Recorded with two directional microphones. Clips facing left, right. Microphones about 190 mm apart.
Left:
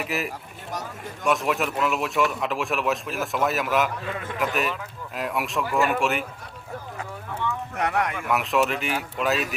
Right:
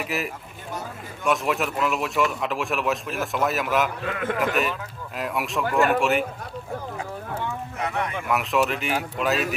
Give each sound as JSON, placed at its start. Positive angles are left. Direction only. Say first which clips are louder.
{"t": 0.0, "sound": "speech", "louder": "even", "side_deg": 0}
{"t": 7.8, "sound": "speech", "louder": "left 3 dB", "side_deg": 75}
{"t": 8.3, "sound": "speech", "louder": "right 1 dB", "side_deg": 0}